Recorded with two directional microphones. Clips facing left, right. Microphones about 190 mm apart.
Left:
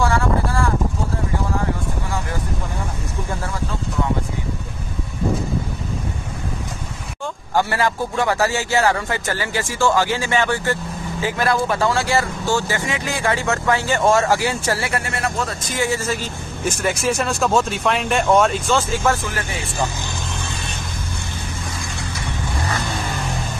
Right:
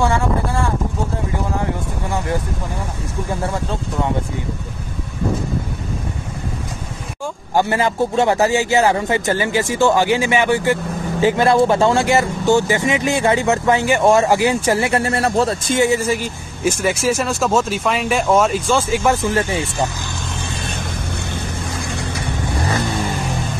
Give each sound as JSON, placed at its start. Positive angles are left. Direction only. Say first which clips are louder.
{"t": 0.0, "sound": "a man's voice", "louder": "right 1 dB", "side_deg": -20}
{"t": 7.5, "sound": "a man's voice", "louder": "right 3 dB", "side_deg": -20}